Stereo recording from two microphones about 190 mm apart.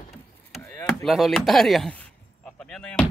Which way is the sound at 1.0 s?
Centre (ahead or behind).